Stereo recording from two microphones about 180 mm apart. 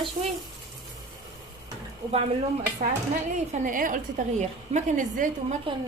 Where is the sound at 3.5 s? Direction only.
45° right (ahead or behind).